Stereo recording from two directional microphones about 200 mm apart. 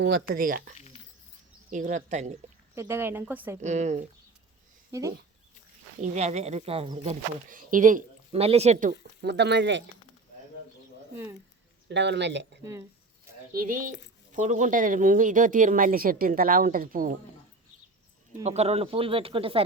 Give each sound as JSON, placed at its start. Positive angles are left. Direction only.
{"t": 0.0, "sound": "speech", "side_deg": -45}
{"t": 1.7, "sound": "speech", "side_deg": -40}
{"t": 2.7, "sound": "speech", "side_deg": -15}
{"t": 3.6, "sound": "speech", "side_deg": -35}
{"t": 4.9, "sound": "speech", "side_deg": -15}
{"t": 6.0, "sound": "speech", "side_deg": -35}
{"t": 9.2, "sound": "speech", "side_deg": -60}
{"t": 11.1, "sound": "speech", "side_deg": -10}
{"t": 11.9, "sound": "speech", "side_deg": -60}
{"t": 13.5, "sound": "speech", "side_deg": -45}
{"t": 18.4, "sound": "speech", "side_deg": -30}